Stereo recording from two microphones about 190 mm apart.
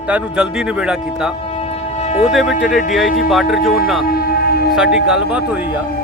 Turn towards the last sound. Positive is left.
turn(degrees=-5)  # may be behind; listen again after turning